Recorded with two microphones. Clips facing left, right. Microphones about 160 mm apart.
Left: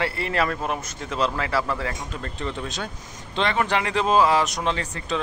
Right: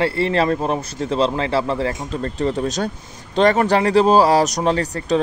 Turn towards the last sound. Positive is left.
turn(degrees=-40)  # may be behind; listen again after turning